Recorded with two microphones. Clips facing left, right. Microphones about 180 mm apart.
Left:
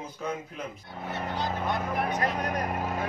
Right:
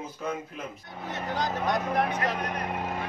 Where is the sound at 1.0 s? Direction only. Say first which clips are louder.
Right 1 dB; 90° right.